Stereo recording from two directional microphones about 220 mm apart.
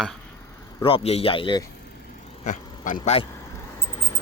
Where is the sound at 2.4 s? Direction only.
35° left (ahead or behind).